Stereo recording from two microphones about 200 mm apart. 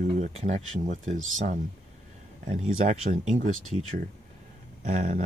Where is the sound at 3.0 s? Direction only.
35° right (ahead or behind).